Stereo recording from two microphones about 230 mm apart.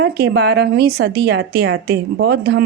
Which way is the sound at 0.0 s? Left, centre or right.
Right.